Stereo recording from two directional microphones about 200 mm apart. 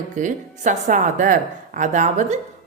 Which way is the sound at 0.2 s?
40° right (ahead or behind).